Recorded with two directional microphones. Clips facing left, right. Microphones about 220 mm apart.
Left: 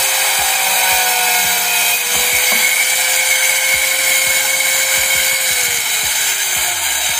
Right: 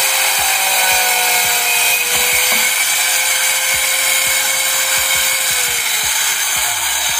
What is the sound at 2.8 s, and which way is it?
Tools, 15° left (ahead or behind).